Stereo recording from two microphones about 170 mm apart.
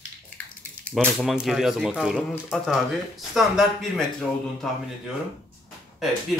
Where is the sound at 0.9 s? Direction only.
5° left (ahead or behind).